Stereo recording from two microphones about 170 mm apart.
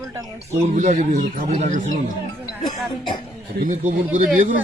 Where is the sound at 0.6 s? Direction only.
45° right (ahead or behind).